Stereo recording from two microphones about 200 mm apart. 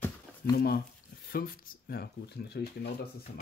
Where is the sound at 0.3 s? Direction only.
10° right (ahead or behind).